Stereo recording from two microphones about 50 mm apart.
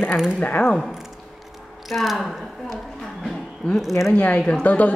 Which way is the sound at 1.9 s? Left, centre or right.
Centre.